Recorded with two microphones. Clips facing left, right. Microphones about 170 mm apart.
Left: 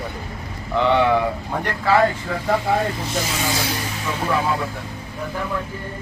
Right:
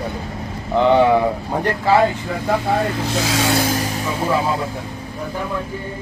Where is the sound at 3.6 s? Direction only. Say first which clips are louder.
Right 6 dB; 45° right (ahead or behind).